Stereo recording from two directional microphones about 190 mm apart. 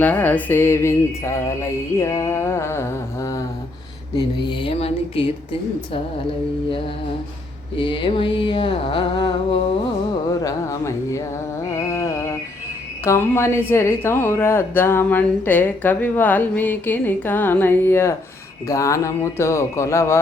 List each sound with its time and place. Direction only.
0.0 s speech: 10° left (ahead or behind)
4.2 s a sound: 25° left (ahead or behind)
7.8 s a sound: 25° left (ahead or behind)
10.4 s speech: 15° left (ahead or behind)
11.9 s mantra: 15° left (ahead or behind)
13.1 s speech: 15° left (ahead or behind)